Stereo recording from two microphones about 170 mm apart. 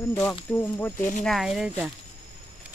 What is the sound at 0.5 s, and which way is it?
Speech, 10° left (ahead or behind).